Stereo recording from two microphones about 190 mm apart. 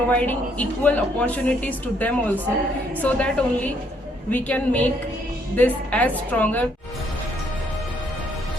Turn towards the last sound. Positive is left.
turn(degrees=10)  # may be behind; listen again after turning